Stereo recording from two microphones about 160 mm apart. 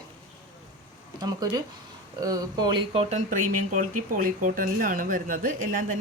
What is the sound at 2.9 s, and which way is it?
Speech, 40° right (ahead or behind).